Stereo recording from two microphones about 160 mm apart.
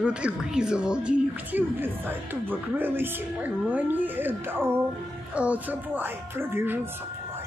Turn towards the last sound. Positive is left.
turn(degrees=-15)  # may be behind; listen again after turning